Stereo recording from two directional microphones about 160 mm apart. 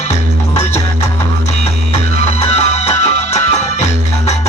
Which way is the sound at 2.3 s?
40° left (ahead or behind).